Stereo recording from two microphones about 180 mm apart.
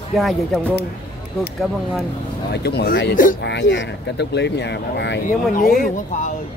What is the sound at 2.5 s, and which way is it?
Speech, 65° left (ahead or behind).